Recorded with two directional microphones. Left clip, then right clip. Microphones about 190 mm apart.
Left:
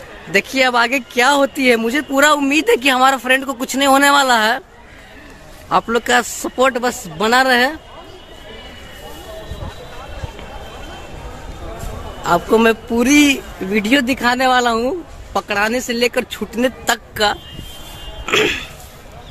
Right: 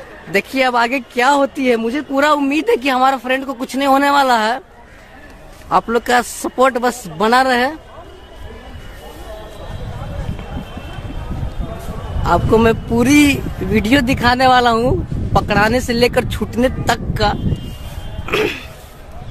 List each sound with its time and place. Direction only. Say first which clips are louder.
0.3 s speech: left 1 dB; 10° right (ahead or behind)
5.7 s a man's voice: right 1 dB; 10° right (ahead or behind)
7.4 s speech: left 1 dB; 5° right (ahead or behind)
12.3 s a man's voice: even; 5° right (ahead or behind)
18.2 s music: left 2 dB; centre (ahead or behind)